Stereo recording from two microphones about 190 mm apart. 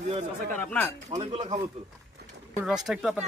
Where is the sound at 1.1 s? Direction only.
35° right (ahead or behind).